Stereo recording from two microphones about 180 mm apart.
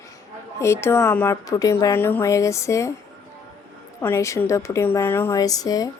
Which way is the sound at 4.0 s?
15° left (ahead or behind).